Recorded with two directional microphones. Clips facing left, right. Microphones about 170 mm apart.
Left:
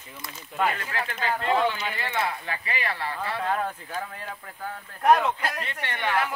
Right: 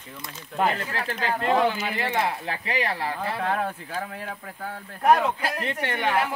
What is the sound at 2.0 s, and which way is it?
Speech, 40° right (ahead or behind).